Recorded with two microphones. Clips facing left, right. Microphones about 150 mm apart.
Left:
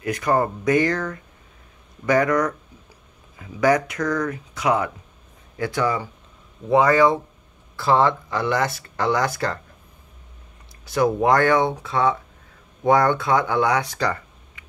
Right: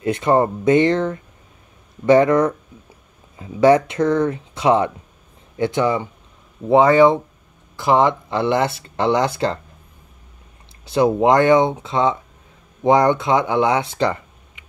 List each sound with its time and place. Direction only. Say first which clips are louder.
0.0 s speech: right 4 dB; 25° right (ahead or behind)
10.9 s speech: right 3 dB; 25° right (ahead or behind)